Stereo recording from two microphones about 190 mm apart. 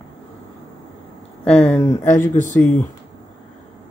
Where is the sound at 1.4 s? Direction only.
5° left (ahead or behind).